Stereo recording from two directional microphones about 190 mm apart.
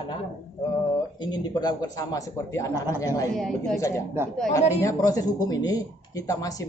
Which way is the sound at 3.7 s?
15° left (ahead or behind).